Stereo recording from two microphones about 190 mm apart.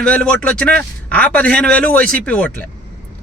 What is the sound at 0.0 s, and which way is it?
Speech, 5° left (ahead or behind).